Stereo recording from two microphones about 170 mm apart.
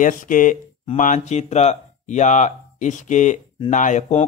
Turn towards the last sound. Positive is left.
turn(degrees=45)  # may be behind; listen again after turning